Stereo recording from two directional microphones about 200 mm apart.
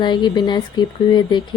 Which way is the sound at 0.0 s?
20° left (ahead or behind).